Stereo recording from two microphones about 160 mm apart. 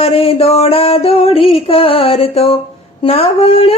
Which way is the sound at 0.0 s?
40° left (ahead or behind).